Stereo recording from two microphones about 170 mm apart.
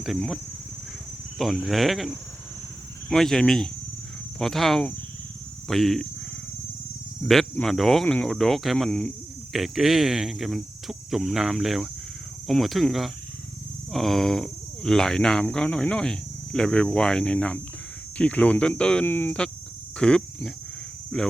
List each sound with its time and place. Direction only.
0.0 s speech: centre (ahead or behind)
1.4 s speech: centre (ahead or behind)
7.3 s speech: centre (ahead or behind)